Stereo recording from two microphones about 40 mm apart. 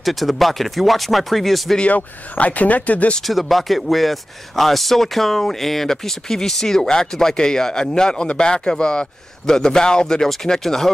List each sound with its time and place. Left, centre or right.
0.0 s speech: centre
1.9 s speech: left
3.3 s speech: centre